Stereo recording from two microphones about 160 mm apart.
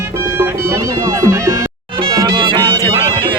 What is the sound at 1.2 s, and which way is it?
Music, 20° right (ahead or behind).